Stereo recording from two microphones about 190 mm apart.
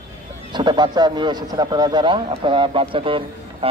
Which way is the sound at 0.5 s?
25° right (ahead or behind).